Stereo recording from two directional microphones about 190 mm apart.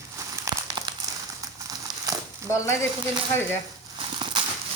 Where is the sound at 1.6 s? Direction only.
20° right (ahead or behind).